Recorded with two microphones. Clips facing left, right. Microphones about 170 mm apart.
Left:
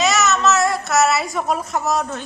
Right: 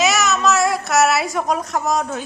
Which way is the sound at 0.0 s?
Centre (ahead or behind).